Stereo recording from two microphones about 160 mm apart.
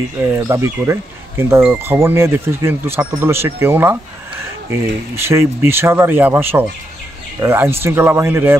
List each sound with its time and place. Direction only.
0.2 s speech: 20° right (ahead or behind)
5.1 s speech: 15° right (ahead or behind)